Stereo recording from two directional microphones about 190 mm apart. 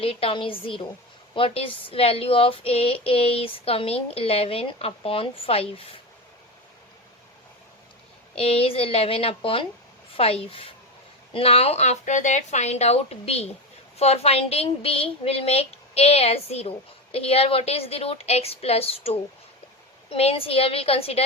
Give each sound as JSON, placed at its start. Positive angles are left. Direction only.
{"t": 0.0, "sound": "a woman's voice", "side_deg": 30}
{"t": 8.4, "sound": "speech", "side_deg": 30}